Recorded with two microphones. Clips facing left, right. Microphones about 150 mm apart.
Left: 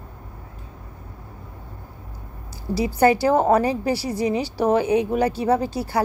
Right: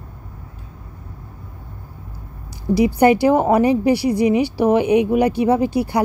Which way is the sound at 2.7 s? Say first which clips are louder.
Right 4 dB; 15° right (ahead or behind).